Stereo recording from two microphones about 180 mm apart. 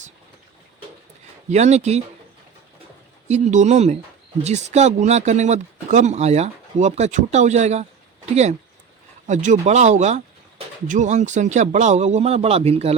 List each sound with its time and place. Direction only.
1.5 s speech: 40° right (ahead or behind)
3.2 s speech: 40° right (ahead or behind)
9.2 s speech: 40° right (ahead or behind)